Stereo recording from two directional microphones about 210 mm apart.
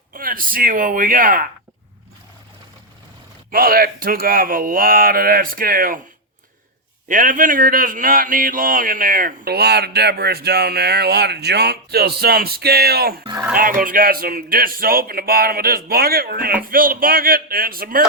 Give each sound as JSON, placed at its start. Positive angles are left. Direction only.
{"t": 0.1, "sound": "speech", "side_deg": -40}
{"t": 3.5, "sound": "a man's voice", "side_deg": -45}
{"t": 7.1, "sound": "a man's voice", "side_deg": -40}